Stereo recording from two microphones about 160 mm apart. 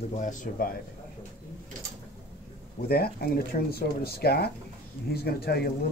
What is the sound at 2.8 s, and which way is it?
Speech, 75° left (ahead or behind).